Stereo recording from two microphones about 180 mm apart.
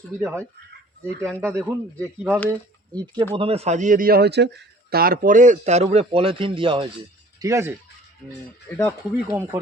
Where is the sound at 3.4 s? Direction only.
35° right (ahead or behind).